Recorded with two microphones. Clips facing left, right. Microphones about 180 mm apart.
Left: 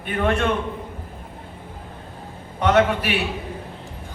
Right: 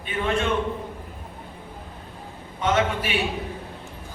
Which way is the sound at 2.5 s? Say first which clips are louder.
Left 5 dB; 65° left (ahead or behind).